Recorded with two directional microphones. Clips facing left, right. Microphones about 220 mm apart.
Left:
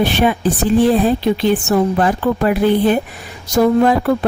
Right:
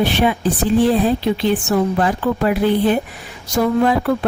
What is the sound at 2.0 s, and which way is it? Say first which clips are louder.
A woman's voice: left 2 dB; 50° left (ahead or behind).